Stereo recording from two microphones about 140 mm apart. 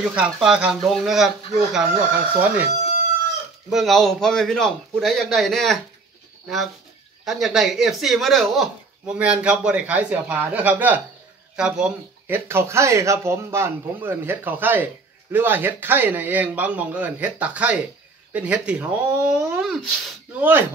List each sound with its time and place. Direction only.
0.0 s a man's voice: 5° right (ahead or behind)
2.4 s speech: 10° right (ahead or behind)
3.7 s a man's voice: centre (ahead or behind)